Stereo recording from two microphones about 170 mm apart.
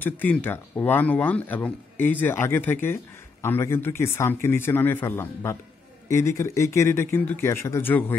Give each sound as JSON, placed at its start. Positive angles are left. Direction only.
{"t": 0.0, "sound": "speech", "side_deg": 10}